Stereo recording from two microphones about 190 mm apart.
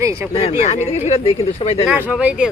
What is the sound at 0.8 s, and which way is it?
Speech, 30° left (ahead or behind).